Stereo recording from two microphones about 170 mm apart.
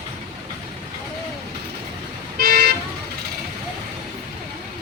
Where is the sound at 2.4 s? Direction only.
65° right (ahead or behind).